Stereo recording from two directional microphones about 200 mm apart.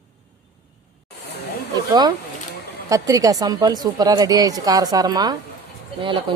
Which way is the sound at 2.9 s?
15° right (ahead or behind).